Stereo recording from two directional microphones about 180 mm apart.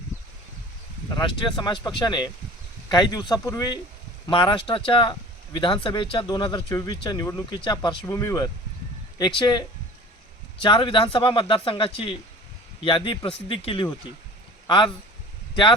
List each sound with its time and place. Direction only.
1.1 s speech: 25° left (ahead or behind)